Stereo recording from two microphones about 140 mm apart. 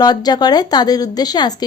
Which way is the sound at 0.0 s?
30° left (ahead or behind).